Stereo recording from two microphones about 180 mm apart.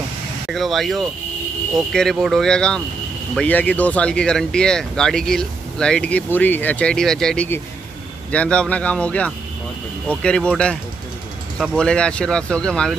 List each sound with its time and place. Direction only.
0.5 s speech: centre (ahead or behind)